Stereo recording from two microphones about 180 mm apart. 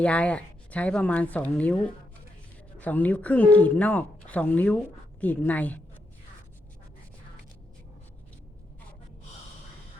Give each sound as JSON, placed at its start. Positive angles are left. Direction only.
{"t": 0.0, "sound": "speech", "side_deg": 5}